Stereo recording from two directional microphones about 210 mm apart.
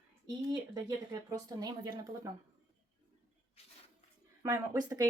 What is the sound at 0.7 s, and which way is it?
Speech, 15° right (ahead or behind).